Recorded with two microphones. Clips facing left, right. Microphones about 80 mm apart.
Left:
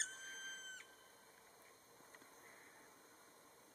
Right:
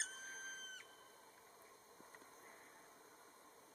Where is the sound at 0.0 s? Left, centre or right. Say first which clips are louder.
Even; centre.